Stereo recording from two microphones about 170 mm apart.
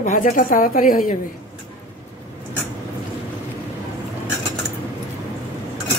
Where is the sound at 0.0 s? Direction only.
50° left (ahead or behind).